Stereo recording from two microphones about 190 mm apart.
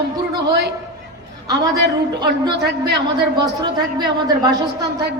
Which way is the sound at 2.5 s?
65° right (ahead or behind).